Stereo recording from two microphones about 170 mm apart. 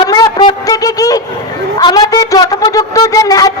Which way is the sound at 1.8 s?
25° left (ahead or behind).